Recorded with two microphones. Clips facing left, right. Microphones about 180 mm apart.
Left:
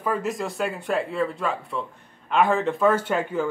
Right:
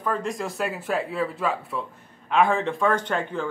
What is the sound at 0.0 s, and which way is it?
A man's voice, 5° left (ahead or behind).